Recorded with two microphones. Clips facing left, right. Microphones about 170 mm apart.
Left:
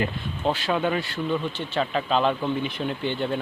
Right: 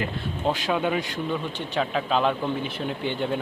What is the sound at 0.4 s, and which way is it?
Speech, 5° right (ahead or behind).